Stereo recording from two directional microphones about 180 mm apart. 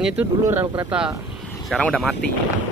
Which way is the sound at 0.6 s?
25° right (ahead or behind).